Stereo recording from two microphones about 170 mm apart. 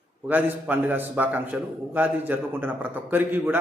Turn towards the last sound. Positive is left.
turn(degrees=-10)  # may be behind; listen again after turning